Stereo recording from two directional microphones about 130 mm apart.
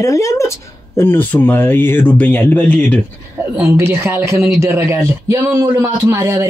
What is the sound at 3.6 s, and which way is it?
Speech, 15° right (ahead or behind).